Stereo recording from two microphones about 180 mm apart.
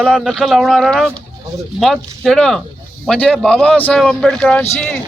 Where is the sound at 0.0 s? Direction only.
Centre (ahead or behind).